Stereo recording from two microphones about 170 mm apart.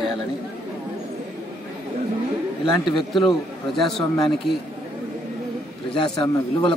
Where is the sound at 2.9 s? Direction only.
Centre (ahead or behind).